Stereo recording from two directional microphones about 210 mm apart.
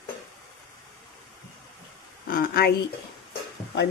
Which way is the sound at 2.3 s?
45° left (ahead or behind).